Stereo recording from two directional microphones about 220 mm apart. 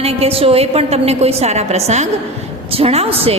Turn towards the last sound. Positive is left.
turn(degrees=-25)  # may be behind; listen again after turning